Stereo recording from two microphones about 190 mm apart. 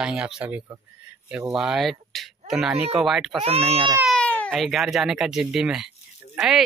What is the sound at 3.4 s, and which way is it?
Speech, 30° right (ahead or behind).